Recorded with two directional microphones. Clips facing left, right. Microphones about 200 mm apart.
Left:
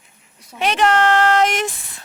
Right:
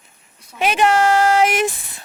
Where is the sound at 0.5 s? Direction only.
5° right (ahead or behind).